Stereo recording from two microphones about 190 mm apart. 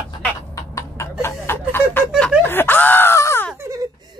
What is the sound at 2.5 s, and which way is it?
Wail, 10° left (ahead or behind).